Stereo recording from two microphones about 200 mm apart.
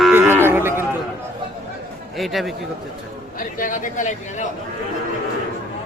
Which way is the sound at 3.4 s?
40° left (ahead or behind).